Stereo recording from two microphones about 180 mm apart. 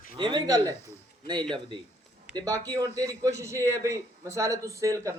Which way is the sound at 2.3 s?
20° right (ahead or behind).